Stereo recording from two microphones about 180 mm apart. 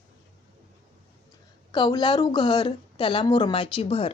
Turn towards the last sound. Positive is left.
turn(degrees=30)  # may be behind; listen again after turning